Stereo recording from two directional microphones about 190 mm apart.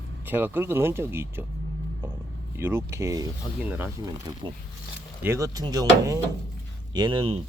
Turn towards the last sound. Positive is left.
turn(degrees=-25)  # may be behind; listen again after turning